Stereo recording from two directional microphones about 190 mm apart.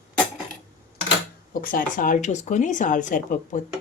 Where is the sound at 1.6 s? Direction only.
45° left (ahead or behind).